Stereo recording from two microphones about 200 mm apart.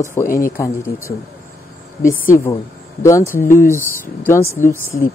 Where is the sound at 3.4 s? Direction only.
40° left (ahead or behind).